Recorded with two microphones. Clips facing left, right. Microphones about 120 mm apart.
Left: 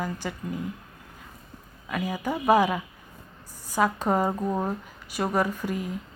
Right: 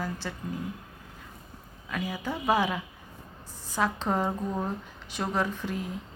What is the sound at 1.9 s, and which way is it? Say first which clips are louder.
A woman's voice: left 4 dB; 10° left (ahead or behind).